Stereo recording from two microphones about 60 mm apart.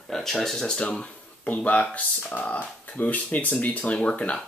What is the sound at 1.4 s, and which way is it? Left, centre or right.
Speech, left.